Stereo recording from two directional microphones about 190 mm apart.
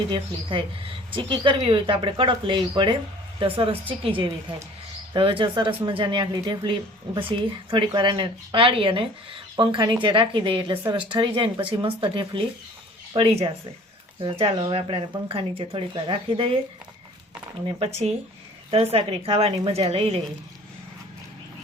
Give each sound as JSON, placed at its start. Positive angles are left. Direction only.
{"t": 0.1, "sound": "speech", "side_deg": -25}
{"t": 17.7, "sound": "a woman's voice", "side_deg": -30}